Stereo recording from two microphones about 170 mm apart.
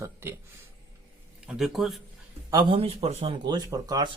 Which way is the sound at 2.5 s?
25° right (ahead or behind).